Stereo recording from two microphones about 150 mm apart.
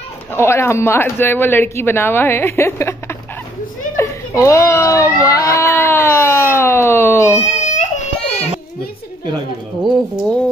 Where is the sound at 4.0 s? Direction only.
20° left (ahead or behind).